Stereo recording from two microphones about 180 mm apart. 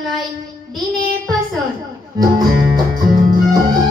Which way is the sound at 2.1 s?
20° right (ahead or behind).